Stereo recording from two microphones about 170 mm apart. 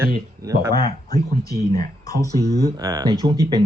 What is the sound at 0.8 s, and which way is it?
Speech, 20° left (ahead or behind).